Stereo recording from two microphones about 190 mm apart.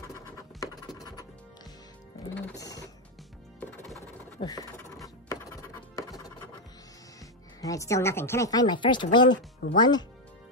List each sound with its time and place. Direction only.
0.4 s scratch: 20° left (ahead or behind)
2.3 s music: 15° left (ahead or behind)
3.5 s music: 5° left (ahead or behind)
4.4 s speech: 20° left (ahead or behind)
5.0 s music: 15° left (ahead or behind)
7.6 s speech: 15° left (ahead or behind)
9.3 s speech: 55° left (ahead or behind)
9.8 s speech: 25° left (ahead or behind)